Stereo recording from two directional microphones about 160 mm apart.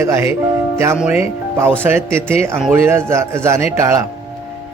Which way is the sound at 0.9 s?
5° right (ahead or behind).